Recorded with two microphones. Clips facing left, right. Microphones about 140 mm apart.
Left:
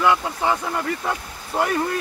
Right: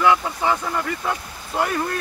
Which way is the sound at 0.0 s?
5° left (ahead or behind).